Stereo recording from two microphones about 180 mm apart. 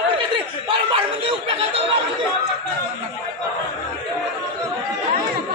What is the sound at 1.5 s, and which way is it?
Chatter, 30° right (ahead or behind).